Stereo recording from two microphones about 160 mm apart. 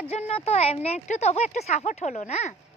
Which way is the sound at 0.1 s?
40° left (ahead or behind).